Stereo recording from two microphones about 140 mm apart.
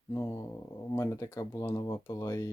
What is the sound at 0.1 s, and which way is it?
Speech, 20° left (ahead or behind).